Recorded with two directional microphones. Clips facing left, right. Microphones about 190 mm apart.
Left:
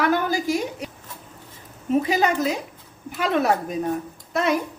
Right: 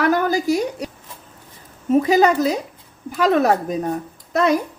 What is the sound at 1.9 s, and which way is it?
A woman's voice, 40° right (ahead or behind).